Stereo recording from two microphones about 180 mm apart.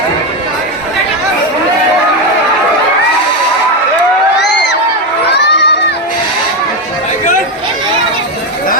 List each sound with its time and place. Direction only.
5.3 s crowd: 70° left (ahead or behind)